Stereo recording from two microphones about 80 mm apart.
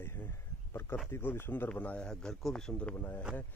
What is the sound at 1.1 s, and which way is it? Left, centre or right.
Speech, left.